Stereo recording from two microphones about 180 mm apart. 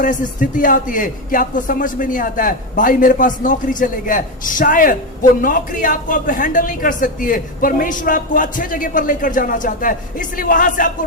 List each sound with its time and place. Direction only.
0.0 s speech: 45° left (ahead or behind)